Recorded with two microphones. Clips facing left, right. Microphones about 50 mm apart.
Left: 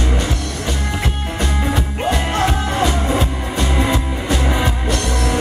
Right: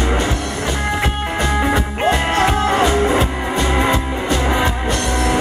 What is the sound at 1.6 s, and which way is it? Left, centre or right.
Music, right.